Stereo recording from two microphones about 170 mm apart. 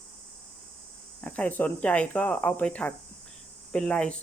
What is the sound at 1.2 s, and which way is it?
Speech, 10° left (ahead or behind).